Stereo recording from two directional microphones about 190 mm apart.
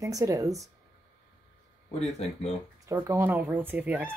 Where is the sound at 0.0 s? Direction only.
20° right (ahead or behind).